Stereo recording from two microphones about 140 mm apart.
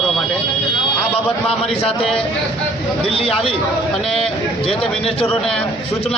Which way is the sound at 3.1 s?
40° left (ahead or behind).